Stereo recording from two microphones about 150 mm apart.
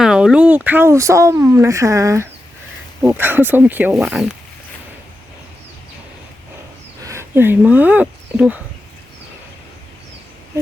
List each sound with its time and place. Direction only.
0.0 s speech: 5° right (ahead or behind)
7.0 s speech: 20° right (ahead or behind)